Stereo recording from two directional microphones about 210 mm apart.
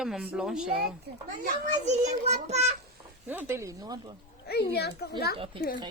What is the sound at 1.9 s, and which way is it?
Speech, 35° right (ahead or behind).